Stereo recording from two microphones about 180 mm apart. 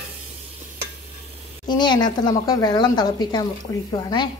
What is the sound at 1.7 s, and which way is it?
A woman's voice, 25° left (ahead or behind).